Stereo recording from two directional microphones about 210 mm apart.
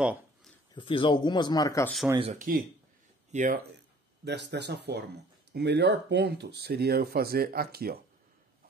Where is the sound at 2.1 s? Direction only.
35° right (ahead or behind).